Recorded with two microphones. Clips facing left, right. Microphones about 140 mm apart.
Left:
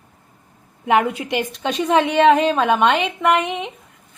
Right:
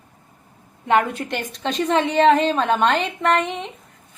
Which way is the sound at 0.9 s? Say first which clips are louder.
Left 2 dB; 10° left (ahead or behind).